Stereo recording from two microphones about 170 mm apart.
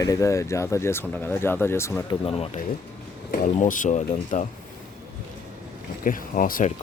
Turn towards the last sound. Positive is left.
turn(degrees=50)  # may be behind; listen again after turning